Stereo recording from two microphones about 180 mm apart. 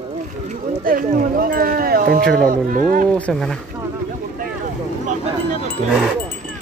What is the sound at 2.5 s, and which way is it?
Speech, 50° right (ahead or behind).